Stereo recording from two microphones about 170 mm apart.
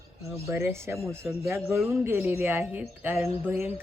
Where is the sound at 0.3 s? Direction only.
15° right (ahead or behind).